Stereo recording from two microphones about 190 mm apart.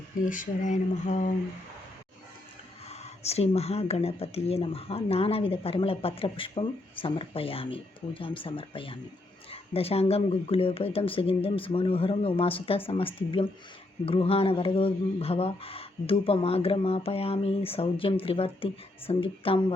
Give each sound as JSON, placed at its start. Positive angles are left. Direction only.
{"t": 0.3, "sound": "speech", "side_deg": 40}
{"t": 2.9, "sound": "speech", "side_deg": 35}